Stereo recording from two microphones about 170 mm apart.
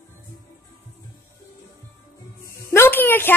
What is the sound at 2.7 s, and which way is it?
Speech, 15° left (ahead or behind).